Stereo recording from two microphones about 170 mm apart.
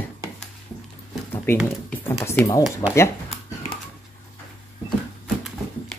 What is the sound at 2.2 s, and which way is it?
Speech, 15° left (ahead or behind).